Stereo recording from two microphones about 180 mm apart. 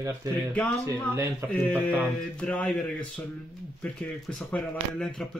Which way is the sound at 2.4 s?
5° left (ahead or behind).